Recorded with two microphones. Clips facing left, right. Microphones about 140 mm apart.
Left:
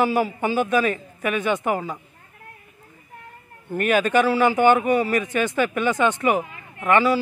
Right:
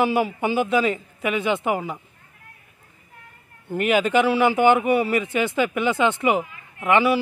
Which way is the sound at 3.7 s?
15° right (ahead or behind).